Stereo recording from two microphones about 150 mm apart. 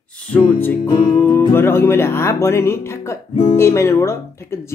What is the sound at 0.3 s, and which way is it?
Speech, 15° left (ahead or behind).